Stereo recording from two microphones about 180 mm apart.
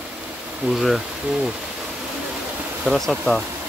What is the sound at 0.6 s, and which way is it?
Speech, centre (ahead or behind).